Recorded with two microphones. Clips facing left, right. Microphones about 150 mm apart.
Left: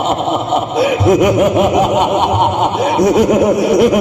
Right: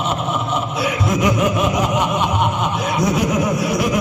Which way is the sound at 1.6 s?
65° left (ahead or behind).